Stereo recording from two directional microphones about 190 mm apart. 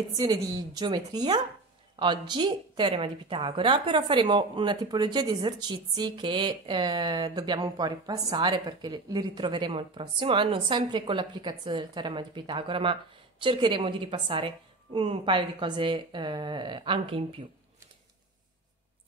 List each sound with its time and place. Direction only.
0.2 s a woman's voice: 20° right (ahead or behind)